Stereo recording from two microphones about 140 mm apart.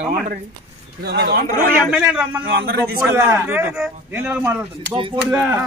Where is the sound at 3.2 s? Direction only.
15° right (ahead or behind).